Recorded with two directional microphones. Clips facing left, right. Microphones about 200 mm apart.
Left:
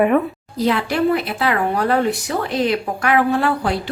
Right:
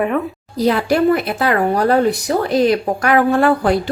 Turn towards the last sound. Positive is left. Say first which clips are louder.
# right 4 dB
turn(degrees=-50)  # may be behind; listen again after turning